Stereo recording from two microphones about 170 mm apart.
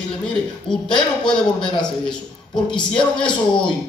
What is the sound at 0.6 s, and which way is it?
A man's voice, 5° left (ahead or behind).